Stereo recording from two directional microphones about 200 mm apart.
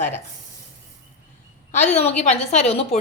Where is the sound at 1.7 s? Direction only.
35° left (ahead or behind).